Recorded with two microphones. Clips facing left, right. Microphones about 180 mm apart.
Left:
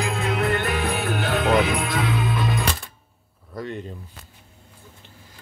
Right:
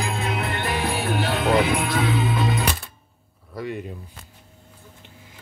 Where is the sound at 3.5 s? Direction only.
10° right (ahead or behind).